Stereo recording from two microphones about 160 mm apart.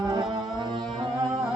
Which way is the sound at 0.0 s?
25° right (ahead or behind).